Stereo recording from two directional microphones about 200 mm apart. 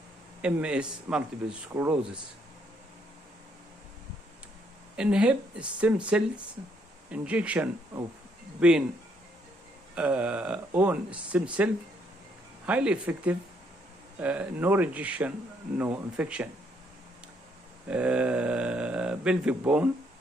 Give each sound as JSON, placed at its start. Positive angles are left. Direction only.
{"t": 0.4, "sound": "speech", "side_deg": -5}
{"t": 4.9, "sound": "speech", "side_deg": -5}
{"t": 9.9, "sound": "speech", "side_deg": -5}
{"t": 12.6, "sound": "speech", "side_deg": -5}
{"t": 17.8, "sound": "speech", "side_deg": -5}